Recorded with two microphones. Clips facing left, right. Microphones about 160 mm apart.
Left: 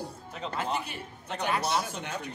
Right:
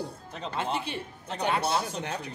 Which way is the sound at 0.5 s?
30° right (ahead or behind).